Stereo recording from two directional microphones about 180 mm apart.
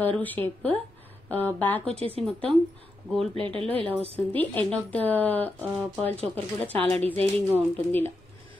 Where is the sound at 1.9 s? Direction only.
30° right (ahead or behind).